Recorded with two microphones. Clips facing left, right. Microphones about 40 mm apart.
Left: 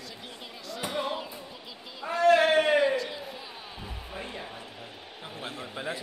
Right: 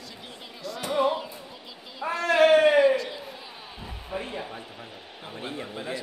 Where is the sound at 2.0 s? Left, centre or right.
Right.